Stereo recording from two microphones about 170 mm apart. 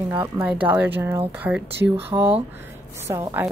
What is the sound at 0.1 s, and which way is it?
A woman's voice, 10° right (ahead or behind).